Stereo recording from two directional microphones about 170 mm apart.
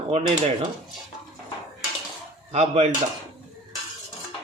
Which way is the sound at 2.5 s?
40° right (ahead or behind).